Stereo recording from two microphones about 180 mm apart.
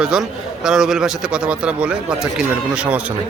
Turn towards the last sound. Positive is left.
turn(degrees=-5)  # may be behind; listen again after turning